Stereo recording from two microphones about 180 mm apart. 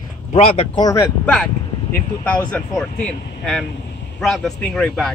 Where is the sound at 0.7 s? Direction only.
20° left (ahead or behind).